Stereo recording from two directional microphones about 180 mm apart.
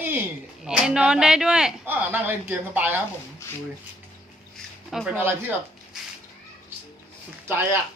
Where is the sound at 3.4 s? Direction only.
15° left (ahead or behind).